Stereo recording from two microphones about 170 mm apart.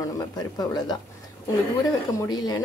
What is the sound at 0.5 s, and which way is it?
Speech, 25° left (ahead or behind).